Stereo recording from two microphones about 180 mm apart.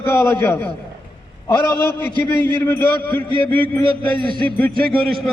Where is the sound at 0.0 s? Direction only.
10° left (ahead or behind).